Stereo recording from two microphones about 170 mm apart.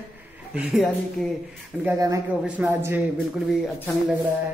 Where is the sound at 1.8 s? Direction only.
20° right (ahead or behind).